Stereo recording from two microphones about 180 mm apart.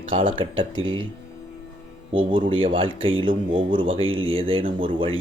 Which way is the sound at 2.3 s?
25° right (ahead or behind).